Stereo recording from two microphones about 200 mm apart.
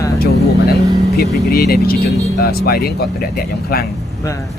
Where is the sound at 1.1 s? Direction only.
50° left (ahead or behind).